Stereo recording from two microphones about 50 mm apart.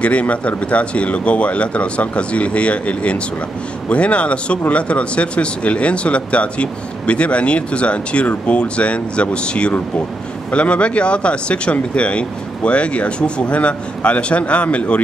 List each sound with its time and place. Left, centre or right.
0.0 s speech: left